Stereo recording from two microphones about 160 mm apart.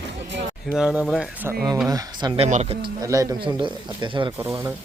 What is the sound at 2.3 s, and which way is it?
Speech, 45° right (ahead or behind).